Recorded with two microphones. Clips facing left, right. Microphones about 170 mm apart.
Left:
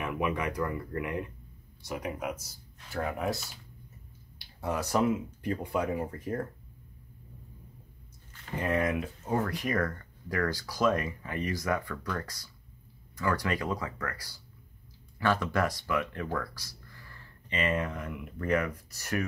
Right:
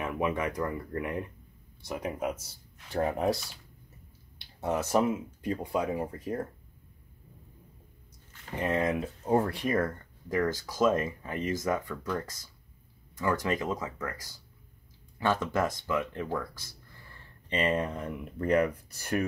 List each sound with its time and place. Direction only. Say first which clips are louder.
0.0 s speech: right 1 dB; 25° right (ahead or behind)
4.4 s speech: right 2 dB; 25° right (ahead or behind)
8.5 s speech: right 1 dB; 25° right (ahead or behind)
17.5 s speech: right 2 dB; 30° right (ahead or behind)